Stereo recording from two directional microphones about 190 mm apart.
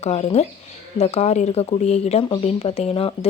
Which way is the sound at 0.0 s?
35° left (ahead or behind).